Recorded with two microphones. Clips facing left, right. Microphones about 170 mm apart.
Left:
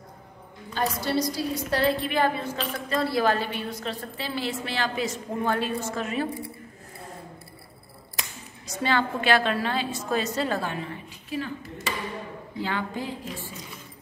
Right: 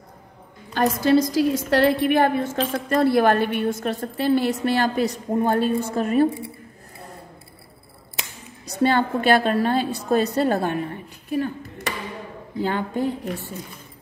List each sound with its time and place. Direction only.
0.7 s speech: 50° right (ahead or behind)
1.3 s a woman's voice: 90° right; by 2.4 s 55° right (ahead or behind)
2.5 s speech: 45° right (ahead or behind)
8.7 s a woman's voice: 50° right (ahead or behind)